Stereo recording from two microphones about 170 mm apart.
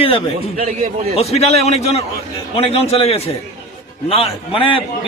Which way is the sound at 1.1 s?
40° left (ahead or behind).